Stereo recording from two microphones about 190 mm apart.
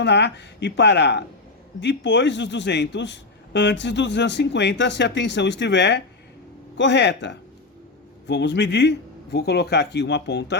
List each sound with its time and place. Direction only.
0.0 s a man's voice: 65° left (ahead or behind)